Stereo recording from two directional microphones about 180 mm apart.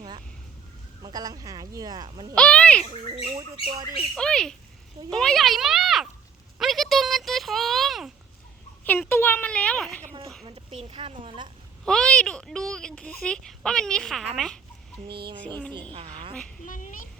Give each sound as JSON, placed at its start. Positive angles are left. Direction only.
{"t": 1.0, "sound": "speech", "side_deg": -20}
{"t": 2.3, "sound": "speech", "side_deg": 5}
{"t": 2.8, "sound": "speech", "side_deg": -30}
{"t": 3.9, "sound": "a child's voice", "side_deg": 0}
{"t": 6.6, "sound": "a sound", "side_deg": 0}
{"t": 8.8, "sound": "a woman's voice", "side_deg": 10}
{"t": 10.4, "sound": "speech", "side_deg": -35}
{"t": 11.9, "sound": "a woman's voice", "side_deg": 5}
{"t": 15.9, "sound": "speech", "side_deg": -30}
{"t": 16.6, "sound": "speech", "side_deg": 45}